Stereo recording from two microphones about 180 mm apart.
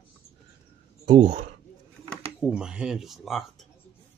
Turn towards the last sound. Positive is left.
turn(degrees=0)  # may be behind; listen again after turning